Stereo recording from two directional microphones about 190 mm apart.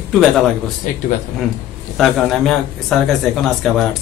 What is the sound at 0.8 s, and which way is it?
Speech, 45° left (ahead or behind).